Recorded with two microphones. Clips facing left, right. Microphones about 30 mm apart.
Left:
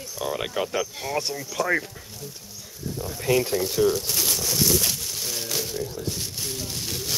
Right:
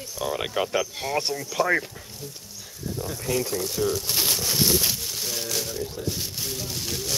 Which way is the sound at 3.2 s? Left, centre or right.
Left.